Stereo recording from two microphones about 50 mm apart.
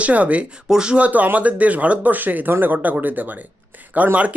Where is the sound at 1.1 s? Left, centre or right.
Right.